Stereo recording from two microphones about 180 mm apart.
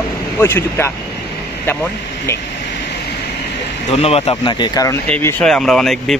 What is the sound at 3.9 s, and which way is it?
Speech, 35° left (ahead or behind).